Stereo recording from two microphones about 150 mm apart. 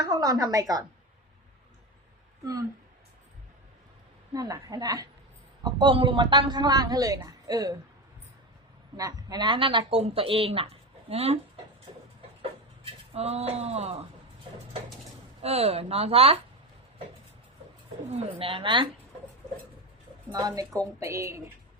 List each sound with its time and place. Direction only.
0.0 s a man's voice: 25° right (ahead or behind)
4.4 s a man's voice: 25° right (ahead or behind)
9.0 s speech: 25° right (ahead or behind); by 11.3 s 40° right (ahead or behind)
12.4 s a sound: 40° right (ahead or behind)
15.4 s speech: 45° right (ahead or behind)
18.1 s speech: 40° right (ahead or behind)
20.3 s a man's voice: 25° right (ahead or behind)